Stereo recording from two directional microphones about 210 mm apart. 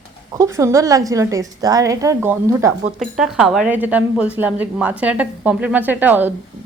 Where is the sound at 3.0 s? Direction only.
Centre (ahead or behind).